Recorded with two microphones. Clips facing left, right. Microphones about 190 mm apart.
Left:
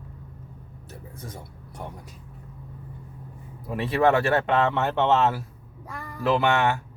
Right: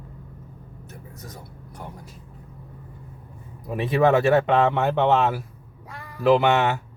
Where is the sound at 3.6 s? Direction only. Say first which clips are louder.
Right 2 dB; 15° right (ahead or behind).